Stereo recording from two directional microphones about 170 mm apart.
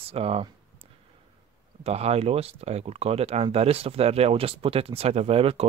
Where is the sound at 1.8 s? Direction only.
40° right (ahead or behind).